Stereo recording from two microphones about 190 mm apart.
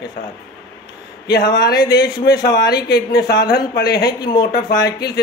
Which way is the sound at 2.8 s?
60° left (ahead or behind).